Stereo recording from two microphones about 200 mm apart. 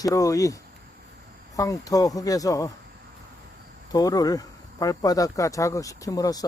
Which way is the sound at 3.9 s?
20° left (ahead or behind).